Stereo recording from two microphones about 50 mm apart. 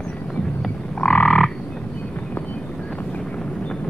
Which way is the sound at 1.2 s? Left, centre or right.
Centre.